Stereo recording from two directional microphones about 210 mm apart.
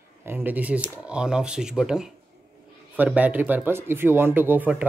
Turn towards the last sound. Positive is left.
turn(degrees=-5)  # may be behind; listen again after turning